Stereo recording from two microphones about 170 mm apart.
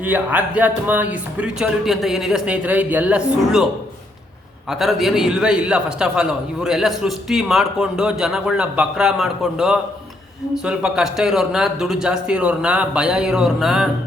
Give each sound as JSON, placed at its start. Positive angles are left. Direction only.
{"t": 0.0, "sound": "speech", "side_deg": -10}
{"t": 4.7, "sound": "a man's voice", "side_deg": 0}